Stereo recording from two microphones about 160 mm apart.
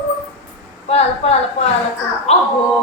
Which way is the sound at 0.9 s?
40° left (ahead or behind).